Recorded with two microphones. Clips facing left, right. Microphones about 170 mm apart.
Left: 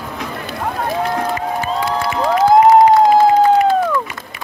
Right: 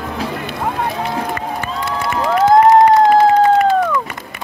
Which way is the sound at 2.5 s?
5° left (ahead or behind).